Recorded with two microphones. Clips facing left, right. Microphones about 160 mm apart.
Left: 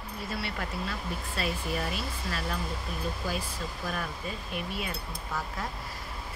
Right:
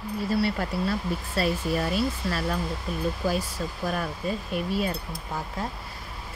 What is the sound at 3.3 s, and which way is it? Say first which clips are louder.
Speech: right 6 dB; 40° right (ahead or behind).